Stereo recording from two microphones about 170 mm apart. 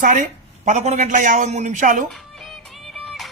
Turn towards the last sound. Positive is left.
turn(degrees=0)  # may be behind; listen again after turning